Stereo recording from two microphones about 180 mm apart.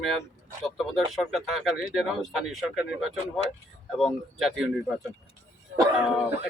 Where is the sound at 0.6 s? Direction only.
Centre (ahead or behind).